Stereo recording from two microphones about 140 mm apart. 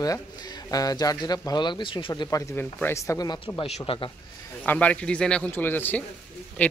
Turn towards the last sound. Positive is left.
turn(degrees=10)  # may be behind; listen again after turning